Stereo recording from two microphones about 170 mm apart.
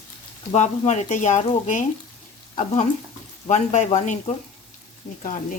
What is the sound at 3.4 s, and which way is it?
Speech, 45° left (ahead or behind).